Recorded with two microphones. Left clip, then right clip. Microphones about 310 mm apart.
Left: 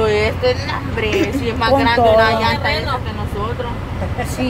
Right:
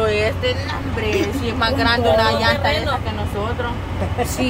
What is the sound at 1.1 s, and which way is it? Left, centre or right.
Speech, centre.